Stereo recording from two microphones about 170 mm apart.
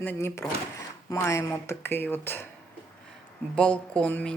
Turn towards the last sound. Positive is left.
turn(degrees=5)  # may be behind; listen again after turning